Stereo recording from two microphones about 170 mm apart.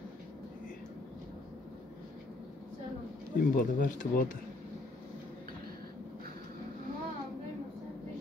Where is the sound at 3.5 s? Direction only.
50° left (ahead or behind).